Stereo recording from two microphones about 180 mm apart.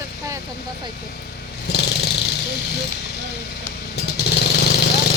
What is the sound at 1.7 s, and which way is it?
Vehicle, 70° left (ahead or behind).